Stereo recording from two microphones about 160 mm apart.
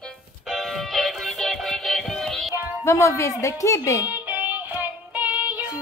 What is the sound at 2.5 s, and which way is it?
Music, 15° right (ahead or behind).